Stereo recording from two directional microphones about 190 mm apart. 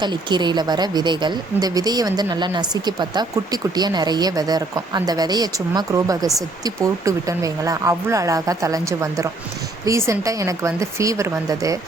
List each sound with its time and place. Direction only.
0.0 s a woman's voice: 25° right (ahead or behind)